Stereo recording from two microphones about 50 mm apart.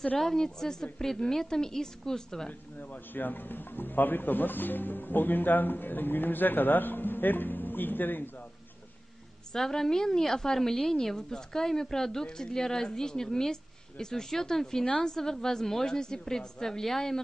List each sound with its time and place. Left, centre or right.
0.2 s a woman's voice: centre
2.8 s speech: left
9.5 s a woman's voice: centre